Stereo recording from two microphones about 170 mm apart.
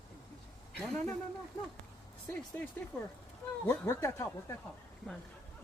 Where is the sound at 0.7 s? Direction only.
5° left (ahead or behind).